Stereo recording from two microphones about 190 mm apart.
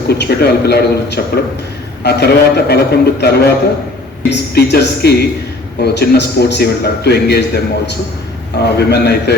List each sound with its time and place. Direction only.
0.1 s a man's voice: 55° left (ahead or behind)